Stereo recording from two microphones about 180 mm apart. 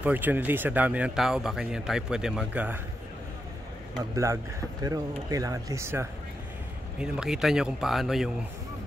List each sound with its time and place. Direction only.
0.0 s speech: 10° right (ahead or behind)
4.1 s speech: 15° right (ahead or behind)
7.0 s a man's voice: 5° right (ahead or behind)